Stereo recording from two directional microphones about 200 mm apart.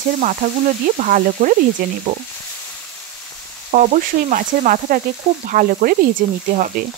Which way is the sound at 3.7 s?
40° right (ahead or behind).